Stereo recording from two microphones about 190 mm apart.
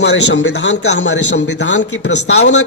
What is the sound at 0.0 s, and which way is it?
A man's voice, 65° left (ahead or behind).